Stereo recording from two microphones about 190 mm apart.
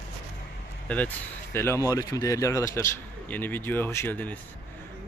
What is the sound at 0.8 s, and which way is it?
Speech, 10° left (ahead or behind).